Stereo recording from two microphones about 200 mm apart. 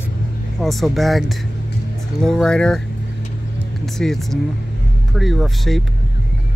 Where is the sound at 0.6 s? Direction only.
Centre (ahead or behind).